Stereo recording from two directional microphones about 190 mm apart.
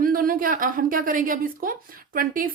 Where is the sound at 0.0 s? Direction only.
50° right (ahead or behind).